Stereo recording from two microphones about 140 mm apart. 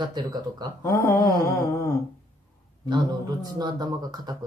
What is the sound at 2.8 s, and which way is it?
Speech, 30° right (ahead or behind).